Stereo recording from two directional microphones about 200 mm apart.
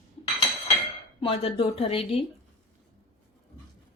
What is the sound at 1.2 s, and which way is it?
Speech, 25° left (ahead or behind).